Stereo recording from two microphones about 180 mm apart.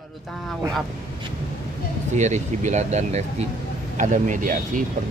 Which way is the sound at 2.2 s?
40° right (ahead or behind).